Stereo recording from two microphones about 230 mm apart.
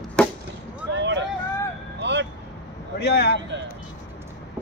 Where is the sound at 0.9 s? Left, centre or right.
Right.